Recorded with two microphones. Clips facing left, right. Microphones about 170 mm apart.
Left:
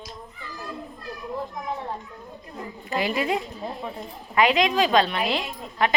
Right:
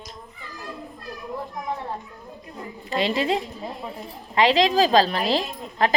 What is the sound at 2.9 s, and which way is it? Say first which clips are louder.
Speech: right 2 dB; 25° right (ahead or behind).